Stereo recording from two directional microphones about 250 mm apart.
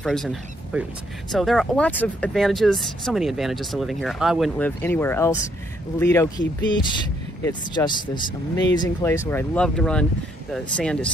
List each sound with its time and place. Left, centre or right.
0.0 s speech: centre